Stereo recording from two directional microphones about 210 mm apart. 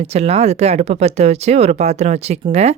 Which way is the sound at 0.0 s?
30° right (ahead or behind).